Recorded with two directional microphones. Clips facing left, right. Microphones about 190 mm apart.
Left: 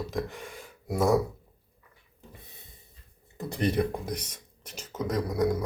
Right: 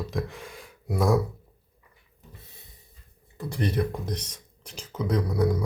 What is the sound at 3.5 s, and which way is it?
Speech, 20° left (ahead or behind).